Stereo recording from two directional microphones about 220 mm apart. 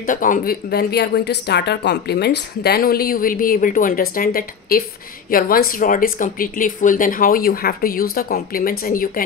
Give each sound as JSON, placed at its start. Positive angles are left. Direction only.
{"t": 0.0, "sound": "speech", "side_deg": 40}